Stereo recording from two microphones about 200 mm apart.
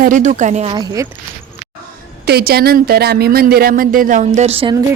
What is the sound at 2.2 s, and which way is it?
Speech, 50° right (ahead or behind).